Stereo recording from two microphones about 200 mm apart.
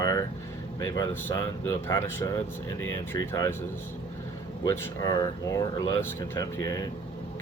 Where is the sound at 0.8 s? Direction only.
15° left (ahead or behind).